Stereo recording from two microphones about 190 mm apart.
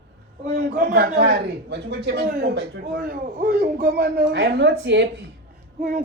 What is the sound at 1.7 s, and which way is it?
A man's voice, 70° right (ahead or behind).